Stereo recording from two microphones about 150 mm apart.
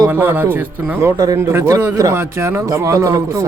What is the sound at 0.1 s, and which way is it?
A man's voice, 15° right (ahead or behind).